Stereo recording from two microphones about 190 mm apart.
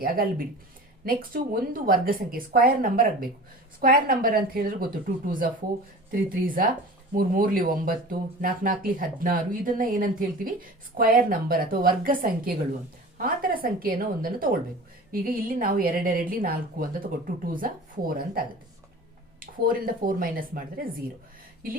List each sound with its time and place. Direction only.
0.0 s speech: 50° right (ahead or behind)
6.1 s speech: 50° right (ahead or behind)